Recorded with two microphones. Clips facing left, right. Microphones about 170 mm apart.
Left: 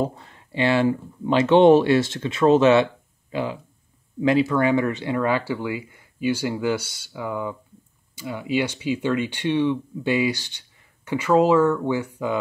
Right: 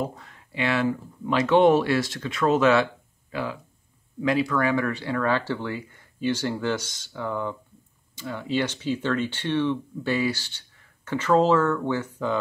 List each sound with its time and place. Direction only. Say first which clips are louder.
0.0 s speech: left 5 dB; 30° left (ahead or behind); by 12.4 s 10° left (ahead or behind)